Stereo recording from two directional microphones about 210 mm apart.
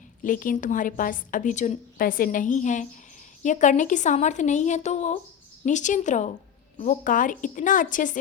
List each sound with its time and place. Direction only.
0.2 s a woman's voice: 40° left (ahead or behind)